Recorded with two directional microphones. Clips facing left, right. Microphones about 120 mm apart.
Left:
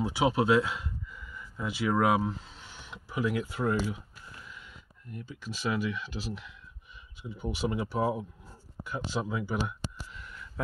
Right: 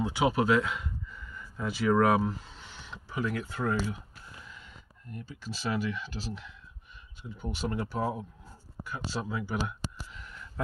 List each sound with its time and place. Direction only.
0.0 s speech: 25° left (ahead or behind)
1.1 s speech: 10° left (ahead or behind)
5.1 s speech: 5° left (ahead or behind)
8.8 s speech: 25° left (ahead or behind)
9.2 s speech: 15° left (ahead or behind)